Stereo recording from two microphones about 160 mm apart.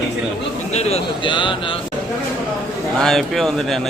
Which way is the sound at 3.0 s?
5° left (ahead or behind).